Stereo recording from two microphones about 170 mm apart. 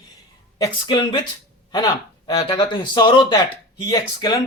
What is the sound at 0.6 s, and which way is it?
A man's voice, 25° left (ahead or behind).